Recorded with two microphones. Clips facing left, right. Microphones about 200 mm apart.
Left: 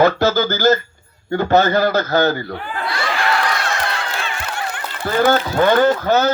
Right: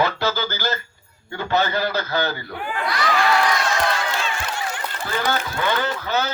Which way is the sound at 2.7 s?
30° left (ahead or behind).